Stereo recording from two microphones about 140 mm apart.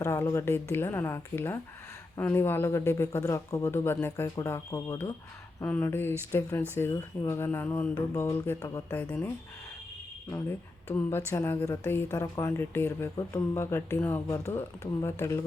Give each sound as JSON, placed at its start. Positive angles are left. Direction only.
{"t": 0.0, "sound": "a man's voice", "side_deg": 20}
{"t": 11.3, "sound": "a man's voice", "side_deg": 15}